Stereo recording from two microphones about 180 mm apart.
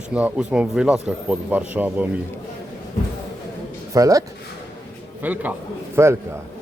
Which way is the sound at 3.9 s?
20° right (ahead or behind).